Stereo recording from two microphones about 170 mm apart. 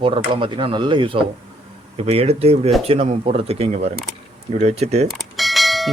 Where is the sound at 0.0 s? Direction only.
30° right (ahead or behind).